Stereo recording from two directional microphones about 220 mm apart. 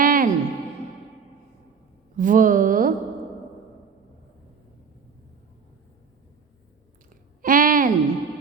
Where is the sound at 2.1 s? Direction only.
35° right (ahead or behind).